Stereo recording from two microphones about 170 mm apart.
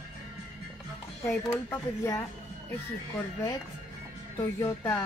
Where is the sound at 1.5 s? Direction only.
15° left (ahead or behind).